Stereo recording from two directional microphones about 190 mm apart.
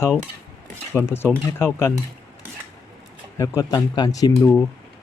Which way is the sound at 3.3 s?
20° left (ahead or behind).